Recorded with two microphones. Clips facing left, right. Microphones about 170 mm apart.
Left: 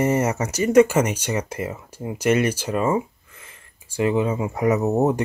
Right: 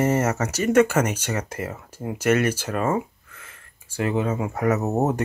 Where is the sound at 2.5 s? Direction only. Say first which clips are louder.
Left 2 dB; 10° left (ahead or behind).